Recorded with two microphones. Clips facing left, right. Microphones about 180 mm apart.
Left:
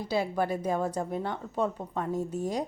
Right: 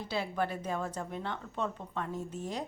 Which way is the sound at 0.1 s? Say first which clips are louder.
Left 5 dB; 40° left (ahead or behind).